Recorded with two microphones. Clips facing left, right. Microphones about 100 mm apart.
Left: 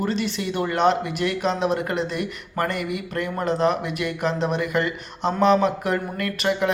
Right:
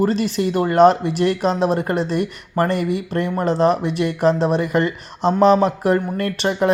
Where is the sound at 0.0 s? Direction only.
40° right (ahead or behind).